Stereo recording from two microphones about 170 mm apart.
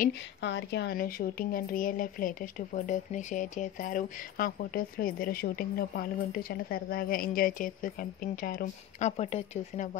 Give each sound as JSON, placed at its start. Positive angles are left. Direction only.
{"t": 0.4, "sound": "speech", "side_deg": 90}
{"t": 9.1, "sound": "speech", "side_deg": 40}